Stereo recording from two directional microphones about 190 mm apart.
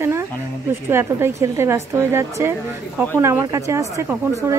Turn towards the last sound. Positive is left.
turn(degrees=-15)  # may be behind; listen again after turning